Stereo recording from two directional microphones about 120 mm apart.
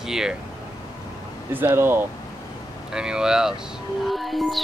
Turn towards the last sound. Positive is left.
turn(degrees=0)  # may be behind; listen again after turning